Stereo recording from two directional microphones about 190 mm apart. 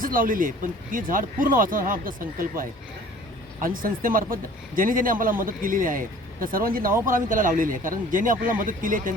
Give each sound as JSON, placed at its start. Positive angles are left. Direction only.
{"t": 0.0, "sound": "speech", "side_deg": -45}